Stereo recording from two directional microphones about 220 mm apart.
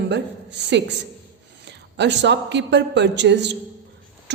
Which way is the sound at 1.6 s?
50° right (ahead or behind).